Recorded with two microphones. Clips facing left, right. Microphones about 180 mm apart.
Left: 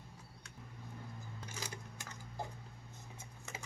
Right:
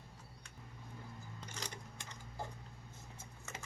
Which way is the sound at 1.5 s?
10° left (ahead or behind).